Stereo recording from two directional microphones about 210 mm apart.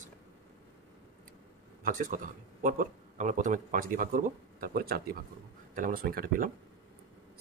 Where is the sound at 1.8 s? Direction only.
40° right (ahead or behind).